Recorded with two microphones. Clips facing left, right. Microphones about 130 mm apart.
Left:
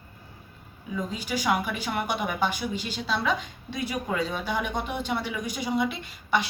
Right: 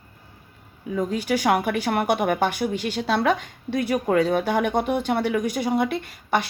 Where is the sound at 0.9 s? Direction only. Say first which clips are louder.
Right 7 dB; 60° right (ahead or behind).